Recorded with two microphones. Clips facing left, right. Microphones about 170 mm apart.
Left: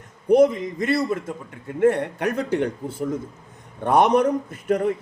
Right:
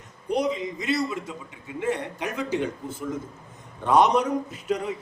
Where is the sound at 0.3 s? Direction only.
55° left (ahead or behind).